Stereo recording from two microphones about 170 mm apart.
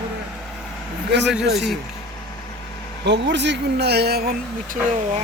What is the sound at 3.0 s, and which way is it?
Speech, 90° right.